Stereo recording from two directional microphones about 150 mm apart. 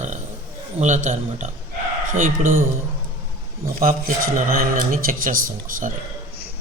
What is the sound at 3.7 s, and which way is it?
Speech, 65° right (ahead or behind).